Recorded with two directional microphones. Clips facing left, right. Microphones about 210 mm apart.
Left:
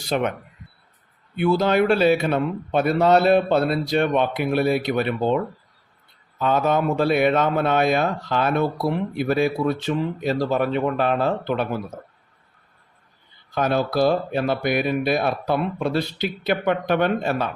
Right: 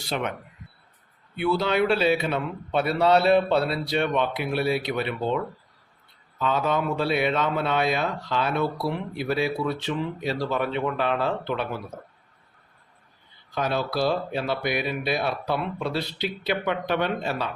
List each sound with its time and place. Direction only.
0.1 s speech: 45° left (ahead or behind)
1.4 s speech: 45° left (ahead or behind)
6.4 s speech: 50° left (ahead or behind)
13.5 s speech: 50° left (ahead or behind)